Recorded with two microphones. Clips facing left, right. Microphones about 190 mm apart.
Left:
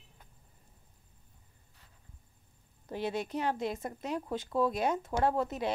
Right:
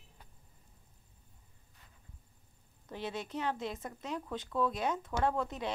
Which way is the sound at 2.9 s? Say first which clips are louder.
Left 5 dB; 10° left (ahead or behind).